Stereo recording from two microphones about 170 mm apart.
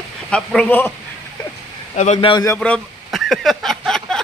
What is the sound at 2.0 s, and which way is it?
Speech, 40° left (ahead or behind).